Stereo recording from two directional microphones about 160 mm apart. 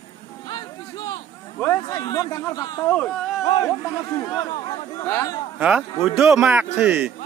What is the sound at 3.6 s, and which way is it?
Speech, 15° left (ahead or behind).